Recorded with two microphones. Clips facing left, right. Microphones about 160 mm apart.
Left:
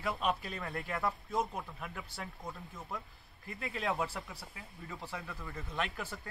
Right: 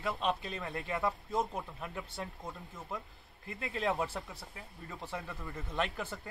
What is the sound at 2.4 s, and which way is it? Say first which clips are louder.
Speech: even; 25° right (ahead or behind).